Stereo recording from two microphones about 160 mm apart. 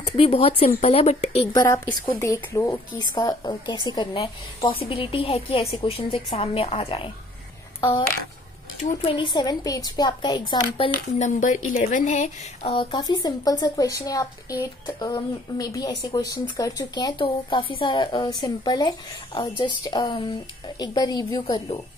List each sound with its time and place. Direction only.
0.0 s a woman's voice: 35° left (ahead or behind)
1.5 s a woman's voice: 15° left (ahead or behind); by 7.1 s 35° left (ahead or behind)
8.9 s speech: 35° left (ahead or behind)
11.1 s speech: 50° left (ahead or behind)
12.7 s speech: 30° left (ahead or behind)